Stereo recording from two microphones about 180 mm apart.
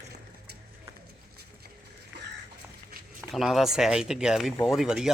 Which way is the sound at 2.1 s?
80° right.